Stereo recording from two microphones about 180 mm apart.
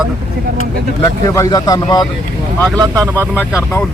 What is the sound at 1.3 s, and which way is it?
Speech, 20° left (ahead or behind).